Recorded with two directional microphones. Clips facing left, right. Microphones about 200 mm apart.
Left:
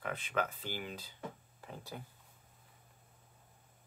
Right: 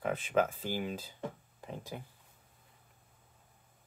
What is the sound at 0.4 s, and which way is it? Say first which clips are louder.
Speech: right 6 dB; 45° right (ahead or behind).